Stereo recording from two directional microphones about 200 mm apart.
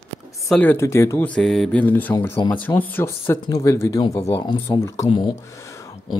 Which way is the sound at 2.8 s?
10° left (ahead or behind).